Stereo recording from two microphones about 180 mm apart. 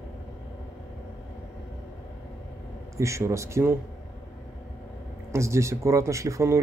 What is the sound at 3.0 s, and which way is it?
Speech, 15° right (ahead or behind).